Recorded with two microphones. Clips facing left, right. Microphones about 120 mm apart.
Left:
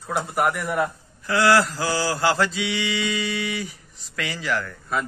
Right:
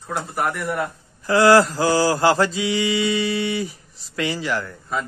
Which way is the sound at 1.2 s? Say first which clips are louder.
Right 5 dB; 40° right (ahead or behind).